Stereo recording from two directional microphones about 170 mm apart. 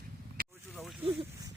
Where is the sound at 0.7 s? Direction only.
Centre (ahead or behind).